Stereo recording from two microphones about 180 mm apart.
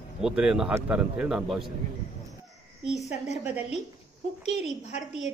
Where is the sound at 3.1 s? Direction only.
40° left (ahead or behind).